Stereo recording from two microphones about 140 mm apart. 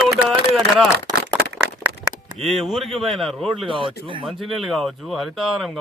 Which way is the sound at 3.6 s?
35° right (ahead or behind).